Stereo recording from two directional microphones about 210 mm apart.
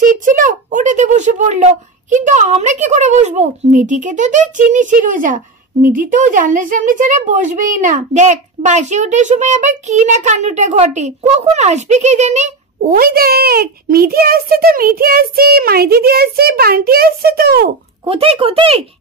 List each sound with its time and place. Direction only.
0.0 s a child's voice: 40° right (ahead or behind)
18.0 s speech: 25° right (ahead or behind)